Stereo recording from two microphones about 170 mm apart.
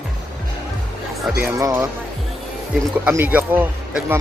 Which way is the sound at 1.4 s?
15° right (ahead or behind).